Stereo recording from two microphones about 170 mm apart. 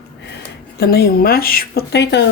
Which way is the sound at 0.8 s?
65° left (ahead or behind).